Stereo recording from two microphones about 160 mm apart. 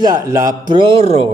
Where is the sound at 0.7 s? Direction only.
35° right (ahead or behind).